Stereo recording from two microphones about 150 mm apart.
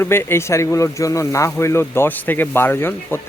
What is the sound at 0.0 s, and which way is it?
Speech, 15° left (ahead or behind).